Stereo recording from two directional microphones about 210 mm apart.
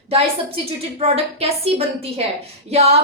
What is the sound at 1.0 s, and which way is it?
A woman's voice, 30° right (ahead or behind).